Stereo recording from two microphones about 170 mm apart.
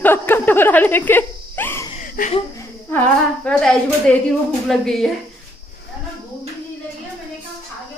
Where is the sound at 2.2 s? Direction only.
55° left (ahead or behind).